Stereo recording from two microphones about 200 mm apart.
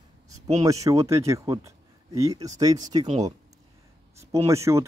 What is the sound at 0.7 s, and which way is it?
Speech, 15° right (ahead or behind).